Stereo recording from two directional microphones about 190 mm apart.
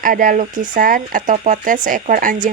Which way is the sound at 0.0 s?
45° right (ahead or behind).